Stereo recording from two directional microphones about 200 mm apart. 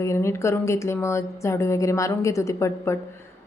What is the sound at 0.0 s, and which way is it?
A woman's voice, 15° left (ahead or behind).